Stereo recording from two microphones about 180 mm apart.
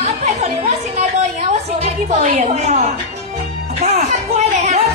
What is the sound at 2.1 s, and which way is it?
Speech, 35° right (ahead or behind).